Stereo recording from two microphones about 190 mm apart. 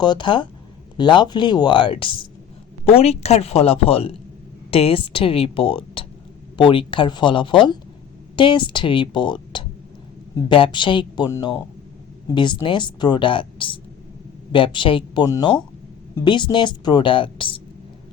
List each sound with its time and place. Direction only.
0.0 s a woman's voice: 25° left (ahead or behind)